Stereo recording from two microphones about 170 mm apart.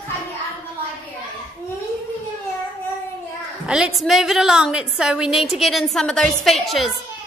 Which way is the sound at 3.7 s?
5° right (ahead or behind).